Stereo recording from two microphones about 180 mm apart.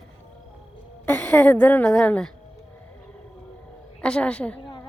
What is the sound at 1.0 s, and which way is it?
A woman's voice, 5° left (ahead or behind).